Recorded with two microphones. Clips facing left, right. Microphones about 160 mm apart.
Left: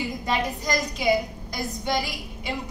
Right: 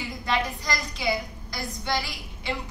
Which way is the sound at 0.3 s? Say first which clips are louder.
Left 1 dB; 15° left (ahead or behind).